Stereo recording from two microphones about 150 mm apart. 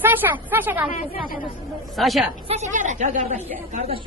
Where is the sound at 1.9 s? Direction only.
Centre (ahead or behind).